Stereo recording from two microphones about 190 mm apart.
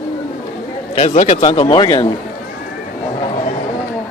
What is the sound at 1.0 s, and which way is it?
Speech, 35° left (ahead or behind).